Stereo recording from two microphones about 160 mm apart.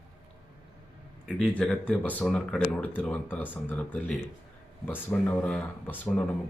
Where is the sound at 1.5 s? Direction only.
5° left (ahead or behind).